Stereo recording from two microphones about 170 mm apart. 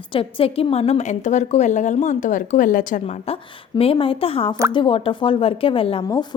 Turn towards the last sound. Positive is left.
turn(degrees=25)  # may be behind; listen again after turning